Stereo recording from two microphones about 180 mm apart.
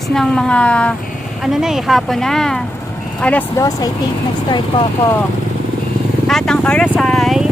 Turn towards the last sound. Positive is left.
turn(degrees=0)  # may be behind; listen again after turning